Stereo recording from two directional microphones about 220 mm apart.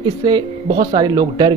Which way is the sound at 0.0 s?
20° right (ahead or behind).